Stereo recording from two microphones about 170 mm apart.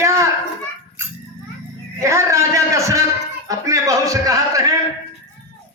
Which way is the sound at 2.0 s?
15° right (ahead or behind).